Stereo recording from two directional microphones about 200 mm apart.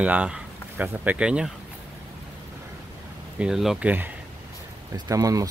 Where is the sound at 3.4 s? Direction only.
Centre (ahead or behind).